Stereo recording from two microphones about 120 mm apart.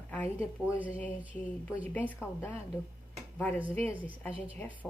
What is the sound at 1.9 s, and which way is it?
Speech, 15° left (ahead or behind).